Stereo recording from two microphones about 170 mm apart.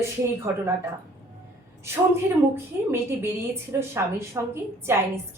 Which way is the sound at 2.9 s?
15° right (ahead or behind).